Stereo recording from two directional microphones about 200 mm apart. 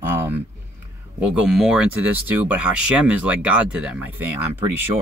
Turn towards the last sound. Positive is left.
turn(degrees=-10)  # may be behind; listen again after turning